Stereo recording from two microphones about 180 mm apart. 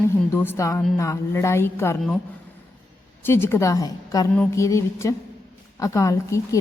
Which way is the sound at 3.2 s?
15° left (ahead or behind).